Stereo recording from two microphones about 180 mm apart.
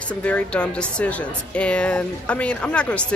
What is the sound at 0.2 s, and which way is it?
Speech, 5° left (ahead or behind).